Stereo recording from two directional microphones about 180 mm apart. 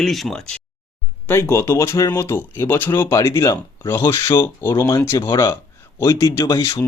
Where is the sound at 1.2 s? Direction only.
15° left (ahead or behind).